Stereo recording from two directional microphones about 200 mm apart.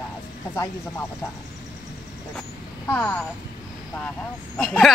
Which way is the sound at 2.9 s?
5° left (ahead or behind).